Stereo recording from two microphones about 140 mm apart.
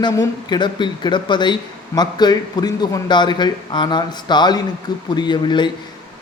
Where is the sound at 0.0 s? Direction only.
30° left (ahead or behind).